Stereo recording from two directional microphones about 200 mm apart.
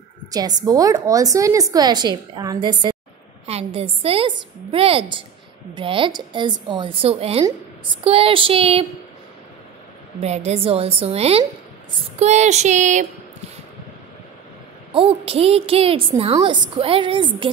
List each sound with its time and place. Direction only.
0.3 s a woman's voice: 20° right (ahead or behind)
10.2 s a woman's voice: 35° right (ahead or behind)
15.0 s a woman's voice: 30° right (ahead or behind)